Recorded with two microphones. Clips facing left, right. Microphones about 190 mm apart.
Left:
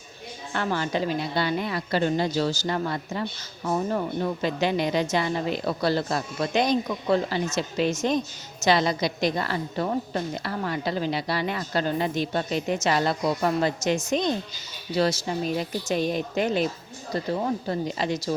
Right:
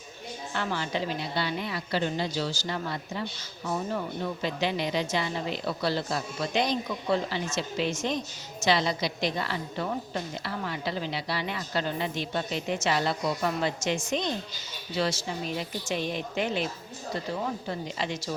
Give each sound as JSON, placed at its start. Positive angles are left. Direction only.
{"t": 0.5, "sound": "a woman's voice", "side_deg": 50}